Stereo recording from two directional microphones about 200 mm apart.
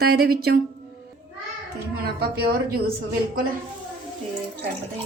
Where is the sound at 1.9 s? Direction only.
50° right (ahead or behind).